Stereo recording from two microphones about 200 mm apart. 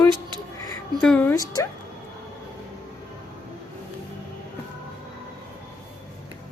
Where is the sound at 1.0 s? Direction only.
5° left (ahead or behind).